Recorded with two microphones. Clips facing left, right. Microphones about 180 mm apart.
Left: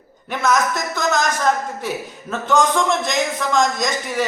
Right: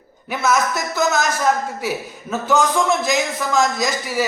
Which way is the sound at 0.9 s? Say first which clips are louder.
Right 2 dB; 5° right (ahead or behind).